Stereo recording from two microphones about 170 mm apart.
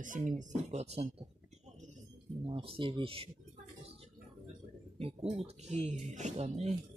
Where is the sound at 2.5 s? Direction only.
30° right (ahead or behind).